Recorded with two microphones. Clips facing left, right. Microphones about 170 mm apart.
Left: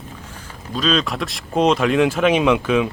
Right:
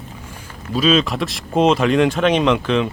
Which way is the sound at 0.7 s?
5° right (ahead or behind).